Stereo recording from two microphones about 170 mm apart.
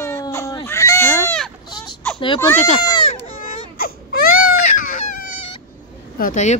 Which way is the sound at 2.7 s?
25° left (ahead or behind).